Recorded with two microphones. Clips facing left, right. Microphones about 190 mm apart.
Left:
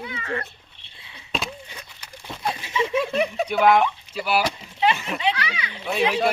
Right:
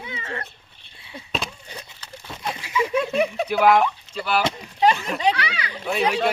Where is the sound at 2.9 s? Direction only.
Centre (ahead or behind).